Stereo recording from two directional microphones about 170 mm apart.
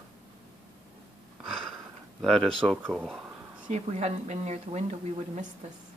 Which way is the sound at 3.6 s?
40° right (ahead or behind).